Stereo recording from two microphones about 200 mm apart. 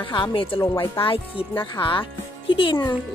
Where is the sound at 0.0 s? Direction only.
25° left (ahead or behind).